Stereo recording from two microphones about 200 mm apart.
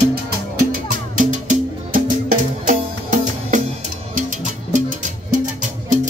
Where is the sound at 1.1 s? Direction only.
40° right (ahead or behind).